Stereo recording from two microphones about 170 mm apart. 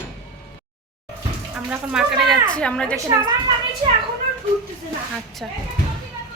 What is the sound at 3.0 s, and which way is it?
Speech, 20° right (ahead or behind).